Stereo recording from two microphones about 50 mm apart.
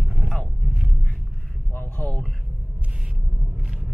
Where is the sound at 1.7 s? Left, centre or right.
Left.